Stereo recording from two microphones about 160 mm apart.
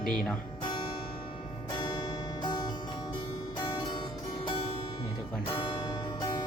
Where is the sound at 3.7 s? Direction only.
30° left (ahead or behind).